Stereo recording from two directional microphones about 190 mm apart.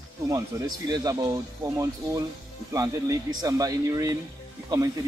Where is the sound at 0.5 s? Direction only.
15° right (ahead or behind).